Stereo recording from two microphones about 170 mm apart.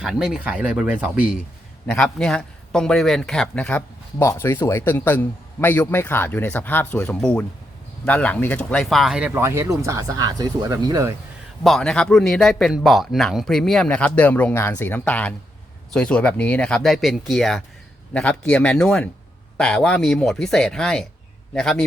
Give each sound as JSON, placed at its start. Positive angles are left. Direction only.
{"t": 0.0, "sound": "speech", "side_deg": 0}
{"t": 11.6, "sound": "speech", "side_deg": 5}